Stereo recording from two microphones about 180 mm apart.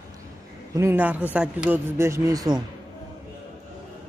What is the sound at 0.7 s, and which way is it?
A man's voice, 10° right (ahead or behind).